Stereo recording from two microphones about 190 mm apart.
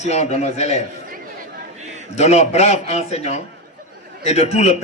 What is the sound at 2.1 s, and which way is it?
A man's voice, 35° left (ahead or behind).